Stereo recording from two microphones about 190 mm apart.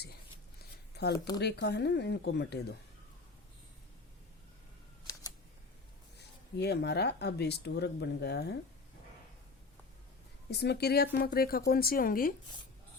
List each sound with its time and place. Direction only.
1.0 s a sound: 60° left (ahead or behind)
1.4 s speech: 60° left (ahead or behind)
6.1 s speech: 60° left (ahead or behind)
10.5 s speech: 60° left (ahead or behind)